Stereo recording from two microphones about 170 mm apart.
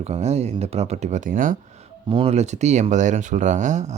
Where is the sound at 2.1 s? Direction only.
35° right (ahead or behind).